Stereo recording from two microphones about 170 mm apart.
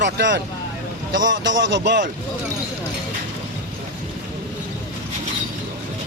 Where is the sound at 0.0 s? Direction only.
90° right.